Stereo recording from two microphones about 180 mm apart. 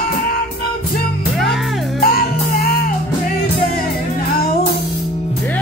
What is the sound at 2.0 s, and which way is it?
Music, 55° left (ahead or behind).